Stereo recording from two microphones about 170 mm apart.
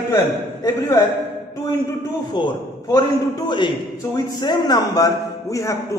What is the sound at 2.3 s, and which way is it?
A man's voice, 25° left (ahead or behind).